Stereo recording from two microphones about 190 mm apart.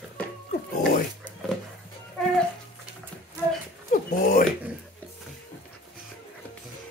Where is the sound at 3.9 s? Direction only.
50° left (ahead or behind).